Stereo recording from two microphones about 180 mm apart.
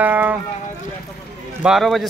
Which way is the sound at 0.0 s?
10° right (ahead or behind).